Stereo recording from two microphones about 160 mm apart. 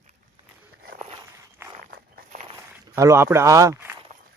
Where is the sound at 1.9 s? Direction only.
65° right (ahead or behind).